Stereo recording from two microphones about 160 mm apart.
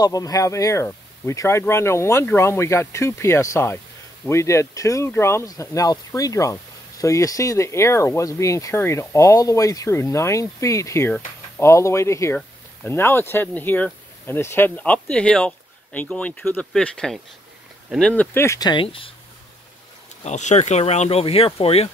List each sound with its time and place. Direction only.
0.0 s speech: 25° left (ahead or behind)
20.2 s speech: 45° left (ahead or behind)